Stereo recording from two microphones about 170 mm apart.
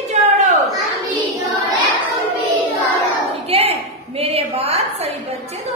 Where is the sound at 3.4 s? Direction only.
35° right (ahead or behind).